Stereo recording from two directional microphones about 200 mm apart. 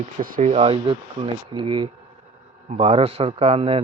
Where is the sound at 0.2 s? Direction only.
40° right (ahead or behind).